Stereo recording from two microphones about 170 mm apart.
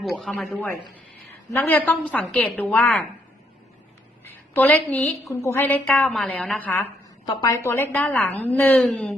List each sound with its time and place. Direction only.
0.0 s a man's voice: centre (ahead or behind)
4.2 s a woman's voice: 10° left (ahead or behind)